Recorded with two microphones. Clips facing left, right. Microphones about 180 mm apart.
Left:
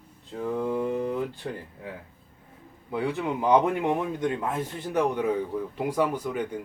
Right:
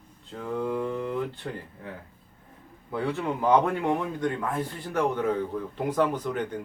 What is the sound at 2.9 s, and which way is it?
Speech, 15° left (ahead or behind).